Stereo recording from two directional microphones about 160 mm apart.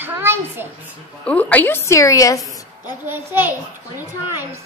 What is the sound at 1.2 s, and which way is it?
A woman's voice, 10° left (ahead or behind).